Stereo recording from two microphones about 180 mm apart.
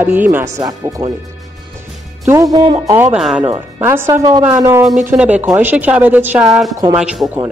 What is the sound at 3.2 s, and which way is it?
Speech, 5° right (ahead or behind).